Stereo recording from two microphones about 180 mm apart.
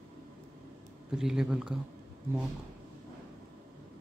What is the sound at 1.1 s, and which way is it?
Speech, 5° right (ahead or behind).